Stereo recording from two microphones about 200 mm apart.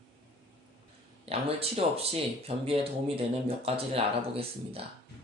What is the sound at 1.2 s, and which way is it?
Speech, 30° right (ahead or behind).